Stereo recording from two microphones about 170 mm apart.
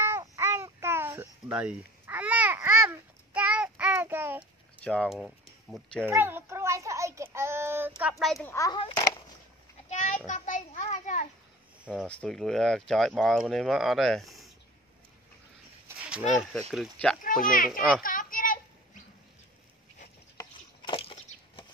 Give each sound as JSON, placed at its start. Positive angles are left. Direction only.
{"t": 0.0, "sound": "babbling", "side_deg": -15}
{"t": 4.8, "sound": "speech", "side_deg": 5}
{"t": 6.0, "sound": "child singing", "side_deg": -15}
{"t": 8.0, "sound": "a woman's voice", "side_deg": 0}
{"t": 8.5, "sound": "a child's voice", "side_deg": 20}
{"t": 9.8, "sound": "children playing", "side_deg": 45}
{"t": 11.8, "sound": "speech", "side_deg": -5}
{"t": 16.0, "sound": "a sound", "side_deg": -5}
{"t": 16.7, "sound": "speech", "side_deg": 0}
{"t": 18.0, "sound": "children playing", "side_deg": 55}
{"t": 20.3, "sound": "chopping", "side_deg": 30}